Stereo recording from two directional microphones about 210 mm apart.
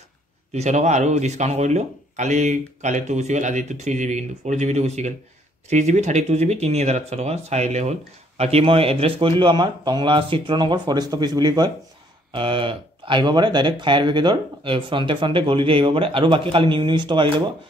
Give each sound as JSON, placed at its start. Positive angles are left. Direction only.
{"t": 0.5, "sound": "speech", "side_deg": -35}